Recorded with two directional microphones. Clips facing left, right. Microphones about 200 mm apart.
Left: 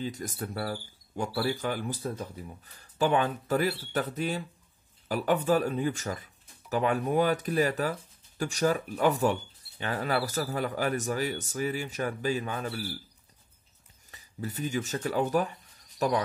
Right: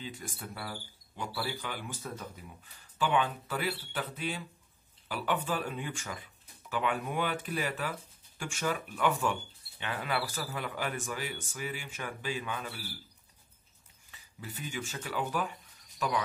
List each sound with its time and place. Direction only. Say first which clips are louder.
0.0 s speech: left 8 dB; 40° left (ahead or behind)
14.1 s speech: left 9 dB; 40° left (ahead or behind)